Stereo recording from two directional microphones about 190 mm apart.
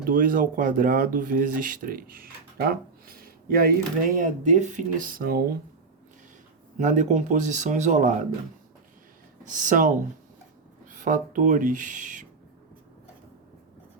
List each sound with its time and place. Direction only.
0.0 s speech: 45° right (ahead or behind)
6.7 s speech: 40° right (ahead or behind)
9.4 s speech: 40° right (ahead or behind)
10.9 s speech: 45° right (ahead or behind)